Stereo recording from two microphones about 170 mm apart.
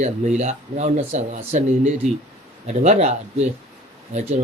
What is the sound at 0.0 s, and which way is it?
Speech, 40° right (ahead or behind).